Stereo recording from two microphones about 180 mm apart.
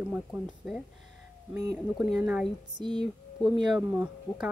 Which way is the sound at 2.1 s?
10° right (ahead or behind).